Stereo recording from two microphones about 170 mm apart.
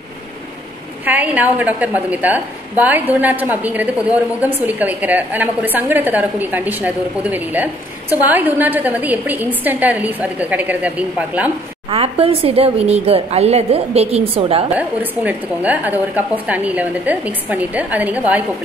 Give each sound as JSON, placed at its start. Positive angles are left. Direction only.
{"t": 1.0, "sound": "a woman's voice", "side_deg": -10}
{"t": 11.9, "sound": "speech", "side_deg": -35}
{"t": 14.8, "sound": "a woman's voice", "side_deg": -10}